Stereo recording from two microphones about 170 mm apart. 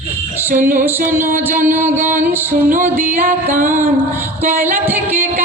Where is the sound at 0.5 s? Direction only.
50° right (ahead or behind).